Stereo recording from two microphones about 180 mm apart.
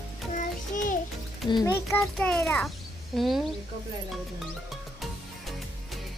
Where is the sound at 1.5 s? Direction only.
20° left (ahead or behind).